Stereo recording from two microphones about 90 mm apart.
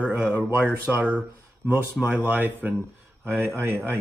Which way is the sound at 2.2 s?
20° right (ahead or behind).